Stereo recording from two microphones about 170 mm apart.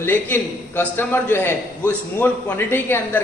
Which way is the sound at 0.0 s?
10° left (ahead or behind).